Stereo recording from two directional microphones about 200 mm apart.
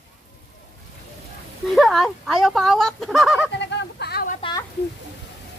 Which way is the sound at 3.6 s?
60° left (ahead or behind).